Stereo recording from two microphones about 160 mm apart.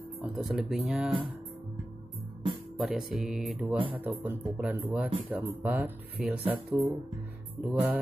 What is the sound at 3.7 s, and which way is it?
Speech, 30° right (ahead or behind).